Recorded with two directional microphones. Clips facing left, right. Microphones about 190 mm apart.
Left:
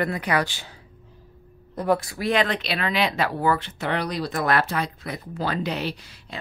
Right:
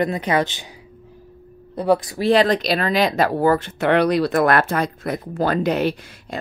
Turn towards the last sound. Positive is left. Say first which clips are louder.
# right 8 dB
turn(degrees=-50)  # may be behind; listen again after turning